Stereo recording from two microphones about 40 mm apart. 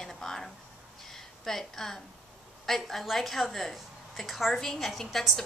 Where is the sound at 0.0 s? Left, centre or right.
Centre.